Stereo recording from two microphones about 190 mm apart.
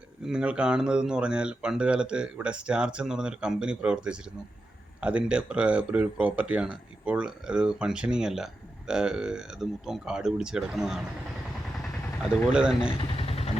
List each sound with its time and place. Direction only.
0.3 s speech: 5° right (ahead or behind)
11.8 s vehicle: centre (ahead or behind)
12.5 s speech: 5° right (ahead or behind)
13.0 s vehicle: 30° left (ahead or behind)